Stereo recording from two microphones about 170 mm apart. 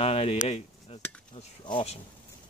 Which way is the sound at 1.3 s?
30° left (ahead or behind).